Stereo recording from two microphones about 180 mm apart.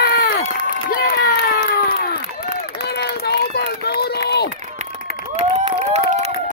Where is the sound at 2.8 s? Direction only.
65° left (ahead or behind).